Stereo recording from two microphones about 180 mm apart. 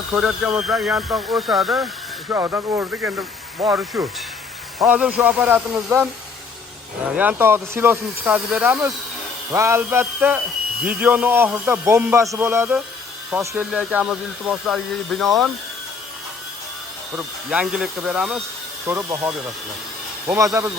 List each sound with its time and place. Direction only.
0.2 s speech: 5° right (ahead or behind)
2.3 s speech: 15° right (ahead or behind)
7.2 s speech: 10° right (ahead or behind)
17.2 s speech: 5° right (ahead or behind)
18.9 s speech: 15° right (ahead or behind)